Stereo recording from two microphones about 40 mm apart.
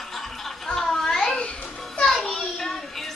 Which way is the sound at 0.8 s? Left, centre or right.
Centre.